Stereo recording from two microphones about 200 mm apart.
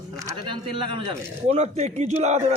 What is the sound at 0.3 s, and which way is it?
A man's voice, 25° right (ahead or behind).